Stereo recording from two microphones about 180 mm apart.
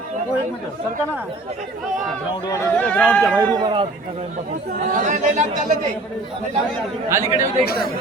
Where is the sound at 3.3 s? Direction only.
20° right (ahead or behind).